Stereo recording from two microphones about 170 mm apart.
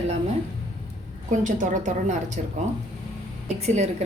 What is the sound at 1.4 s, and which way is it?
A woman's voice, 45° right (ahead or behind).